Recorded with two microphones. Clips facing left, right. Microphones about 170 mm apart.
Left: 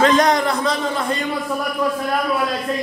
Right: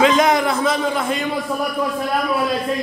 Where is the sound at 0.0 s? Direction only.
5° right (ahead or behind).